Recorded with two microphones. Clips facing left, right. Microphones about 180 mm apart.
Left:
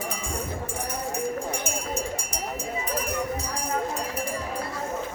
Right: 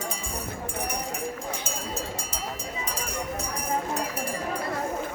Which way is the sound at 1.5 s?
90° right.